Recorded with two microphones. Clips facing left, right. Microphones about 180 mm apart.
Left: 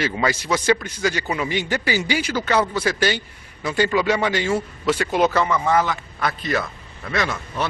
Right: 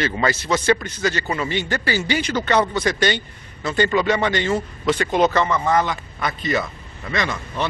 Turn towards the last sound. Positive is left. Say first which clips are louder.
# even
turn(degrees=5)  # may be behind; listen again after turning